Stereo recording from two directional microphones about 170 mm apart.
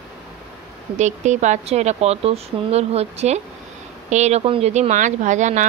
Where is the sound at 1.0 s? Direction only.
45° right (ahead or behind).